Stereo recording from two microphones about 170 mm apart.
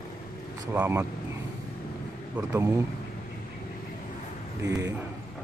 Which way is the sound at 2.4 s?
15° right (ahead or behind).